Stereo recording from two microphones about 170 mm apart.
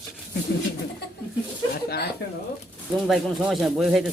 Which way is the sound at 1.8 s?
75° left (ahead or behind).